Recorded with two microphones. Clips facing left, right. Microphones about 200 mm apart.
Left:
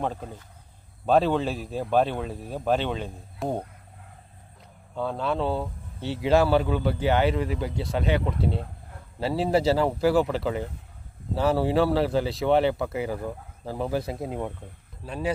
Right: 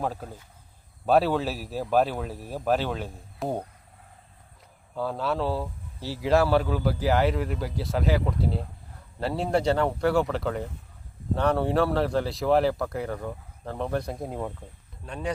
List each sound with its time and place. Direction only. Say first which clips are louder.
0.0 s speech: left 1 dB; 5° right (ahead or behind)
4.9 s speech: left 1 dB; 5° right (ahead or behind)